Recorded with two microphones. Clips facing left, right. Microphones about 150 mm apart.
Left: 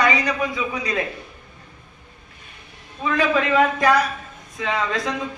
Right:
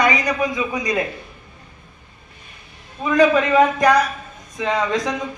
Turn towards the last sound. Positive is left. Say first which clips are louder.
# right 3 dB
turn(degrees=-20)  # may be behind; listen again after turning